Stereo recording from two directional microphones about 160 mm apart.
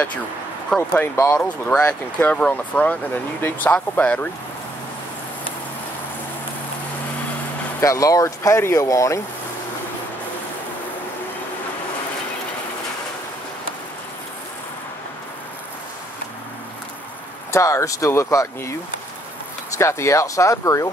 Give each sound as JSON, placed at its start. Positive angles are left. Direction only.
{"t": 0.7, "sound": "speech", "side_deg": 10}
{"t": 7.8, "sound": "speech", "side_deg": 20}
{"t": 17.5, "sound": "speech", "side_deg": 20}
{"t": 19.8, "sound": "speech", "side_deg": 15}